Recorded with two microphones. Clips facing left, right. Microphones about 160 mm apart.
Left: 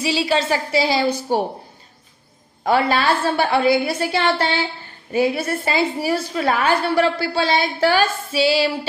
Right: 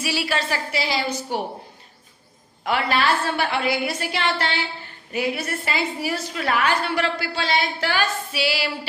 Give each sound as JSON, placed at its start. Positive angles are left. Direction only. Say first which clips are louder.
{"t": 0.0, "sound": "a woman's voice", "louder": "left 6 dB", "side_deg": 20}
{"t": 2.6, "sound": "a woman's voice", "louder": "left 4 dB", "side_deg": 30}